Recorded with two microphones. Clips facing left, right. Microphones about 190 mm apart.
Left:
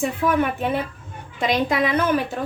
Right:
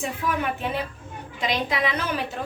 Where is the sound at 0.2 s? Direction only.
55° left (ahead or behind).